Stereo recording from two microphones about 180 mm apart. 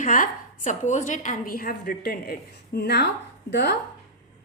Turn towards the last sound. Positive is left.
turn(degrees=70)  # may be behind; listen again after turning